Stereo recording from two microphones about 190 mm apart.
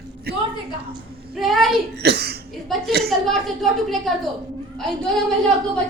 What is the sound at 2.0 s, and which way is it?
Speech, 60° right (ahead or behind).